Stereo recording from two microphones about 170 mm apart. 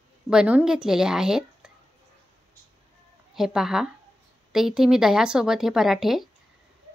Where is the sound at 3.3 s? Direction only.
Centre (ahead or behind).